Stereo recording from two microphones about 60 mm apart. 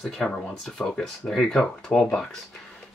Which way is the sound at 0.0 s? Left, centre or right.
Centre.